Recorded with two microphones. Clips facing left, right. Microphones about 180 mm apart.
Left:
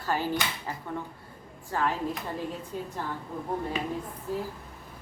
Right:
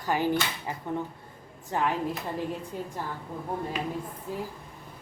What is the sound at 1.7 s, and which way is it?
Speech, 20° right (ahead or behind).